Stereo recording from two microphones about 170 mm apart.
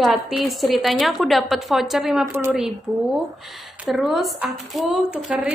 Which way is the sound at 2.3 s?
15° right (ahead or behind).